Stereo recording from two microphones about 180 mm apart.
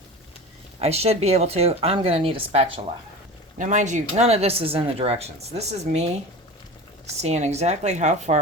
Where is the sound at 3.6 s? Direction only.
40° right (ahead or behind).